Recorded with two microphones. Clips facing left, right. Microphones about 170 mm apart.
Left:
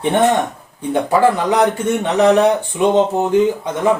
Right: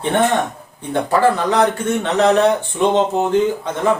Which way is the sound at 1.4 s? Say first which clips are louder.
Left 1 dB; 15° left (ahead or behind).